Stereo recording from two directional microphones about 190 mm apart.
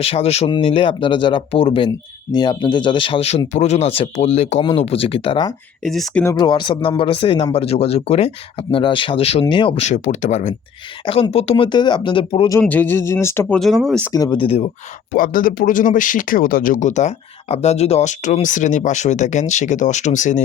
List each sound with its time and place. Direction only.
0.0 s speech: 30° left (ahead or behind)
5.8 s speech: centre (ahead or behind)
6.2 s speech: 20° left (ahead or behind)
12.5 s speech: 10° left (ahead or behind)
13.6 s speech: centre (ahead or behind)
14.0 s speech: 20° left (ahead or behind)
15.1 s speech: 50° left (ahead or behind)